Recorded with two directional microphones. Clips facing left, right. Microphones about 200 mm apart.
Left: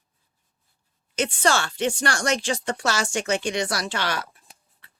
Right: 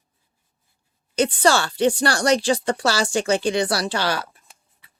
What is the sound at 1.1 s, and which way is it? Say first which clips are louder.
Speech: right 4 dB; 35° right (ahead or behind).